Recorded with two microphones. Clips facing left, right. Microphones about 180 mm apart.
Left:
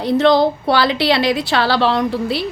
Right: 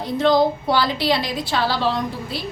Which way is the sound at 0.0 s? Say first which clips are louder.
Left 4 dB; 75° left (ahead or behind).